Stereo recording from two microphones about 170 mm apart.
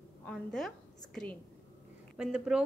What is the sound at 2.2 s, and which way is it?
Speech, 5° right (ahead or behind).